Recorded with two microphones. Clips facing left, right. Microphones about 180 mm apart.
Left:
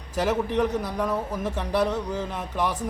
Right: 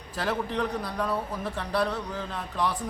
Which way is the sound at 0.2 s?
10° left (ahead or behind).